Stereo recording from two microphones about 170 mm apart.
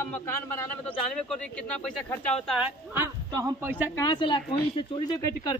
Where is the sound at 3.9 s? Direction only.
25° left (ahead or behind).